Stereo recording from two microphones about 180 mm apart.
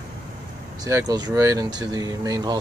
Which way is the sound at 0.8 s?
20° right (ahead or behind).